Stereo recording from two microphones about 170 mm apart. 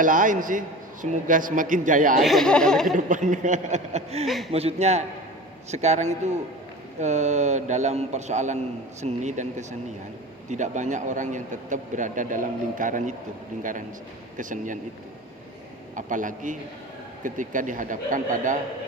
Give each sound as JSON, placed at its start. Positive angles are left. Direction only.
{"t": 0.0, "sound": "a man's voice", "side_deg": -50}
{"t": 2.2, "sound": "speech", "side_deg": 0}
{"t": 3.1, "sound": "a man's voice", "side_deg": -50}
{"t": 16.0, "sound": "a man's voice", "side_deg": -50}